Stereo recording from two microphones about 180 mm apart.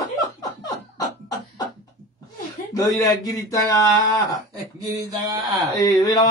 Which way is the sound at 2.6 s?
45° left (ahead or behind).